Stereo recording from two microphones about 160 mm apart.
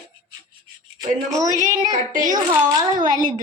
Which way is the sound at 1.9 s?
55° right (ahead or behind).